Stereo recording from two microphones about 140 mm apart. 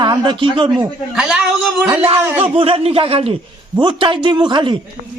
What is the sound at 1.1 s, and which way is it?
Speech, 5° right (ahead or behind).